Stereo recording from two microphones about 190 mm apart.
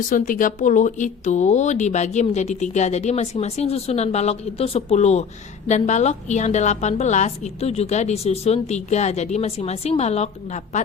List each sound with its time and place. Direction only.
0.1 s a woman's voice: 45° left (ahead or behind)